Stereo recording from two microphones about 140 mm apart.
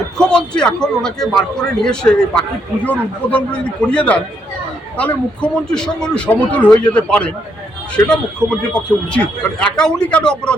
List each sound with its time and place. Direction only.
0.2 s a man's voice: 5° left (ahead or behind)